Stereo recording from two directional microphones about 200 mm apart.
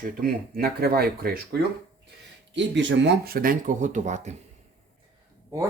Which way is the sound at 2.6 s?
65° right (ahead or behind).